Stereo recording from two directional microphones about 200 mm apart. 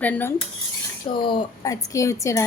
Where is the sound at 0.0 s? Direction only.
10° left (ahead or behind).